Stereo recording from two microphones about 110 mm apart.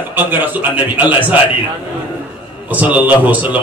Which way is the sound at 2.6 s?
15° right (ahead or behind).